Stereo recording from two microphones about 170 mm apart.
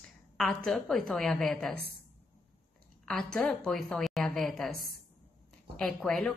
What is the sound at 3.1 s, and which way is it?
A woman's voice, 5° left (ahead or behind).